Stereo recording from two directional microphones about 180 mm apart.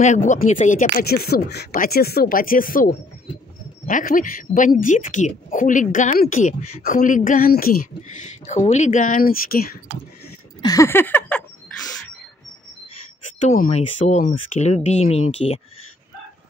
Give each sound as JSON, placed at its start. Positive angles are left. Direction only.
{"t": 0.0, "sound": "speech", "side_deg": 45}
{"t": 10.6, "sound": "a sound", "side_deg": 20}
{"t": 13.4, "sound": "speech", "side_deg": 40}